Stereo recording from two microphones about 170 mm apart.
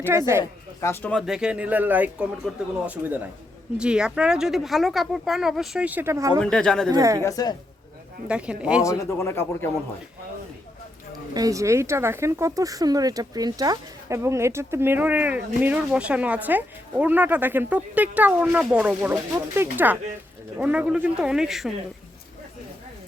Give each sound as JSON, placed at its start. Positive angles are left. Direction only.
{"t": 0.1, "sound": "speech", "side_deg": -15}
{"t": 0.8, "sound": "speech", "side_deg": 15}
{"t": 1.1, "sound": "speech", "side_deg": -5}
{"t": 6.4, "sound": "speech", "side_deg": 5}
{"t": 6.9, "sound": "speech", "side_deg": -20}
{"t": 7.2, "sound": "a woman's voice", "side_deg": 20}
{"t": 8.3, "sound": "speech", "side_deg": -5}
{"t": 9.0, "sound": "speech", "side_deg": 15}
{"t": 11.3, "sound": "speech", "side_deg": -20}